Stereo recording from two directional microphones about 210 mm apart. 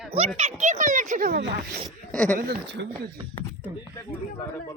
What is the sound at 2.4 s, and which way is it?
Speech, 45° right (ahead or behind).